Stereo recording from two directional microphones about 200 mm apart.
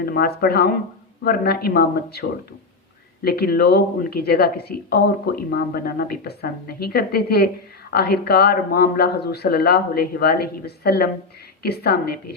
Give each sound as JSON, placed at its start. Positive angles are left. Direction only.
{"t": 0.0, "sound": "a woman's voice", "side_deg": 50}
{"t": 3.2, "sound": "a woman's voice", "side_deg": 50}